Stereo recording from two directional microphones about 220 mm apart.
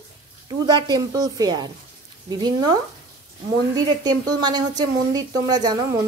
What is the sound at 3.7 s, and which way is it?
A woman's voice, 15° right (ahead or behind).